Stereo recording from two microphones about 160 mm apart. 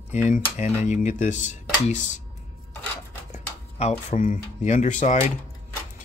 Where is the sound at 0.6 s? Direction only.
45° left (ahead or behind).